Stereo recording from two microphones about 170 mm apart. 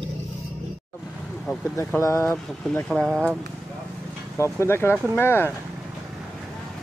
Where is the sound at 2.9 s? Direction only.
Centre (ahead or behind).